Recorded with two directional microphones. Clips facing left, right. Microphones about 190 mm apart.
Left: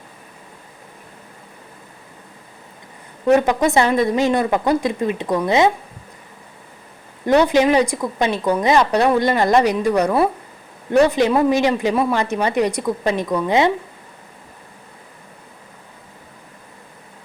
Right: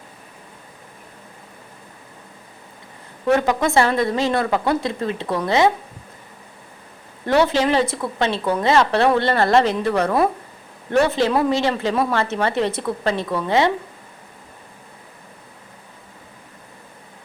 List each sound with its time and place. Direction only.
3.2 s speech: 20° left (ahead or behind)
7.3 s speech: 15° left (ahead or behind)